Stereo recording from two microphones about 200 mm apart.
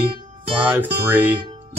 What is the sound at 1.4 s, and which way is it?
Music, 30° right (ahead or behind).